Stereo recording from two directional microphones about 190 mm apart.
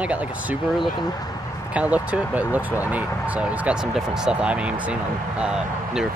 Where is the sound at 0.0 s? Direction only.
5° right (ahead or behind).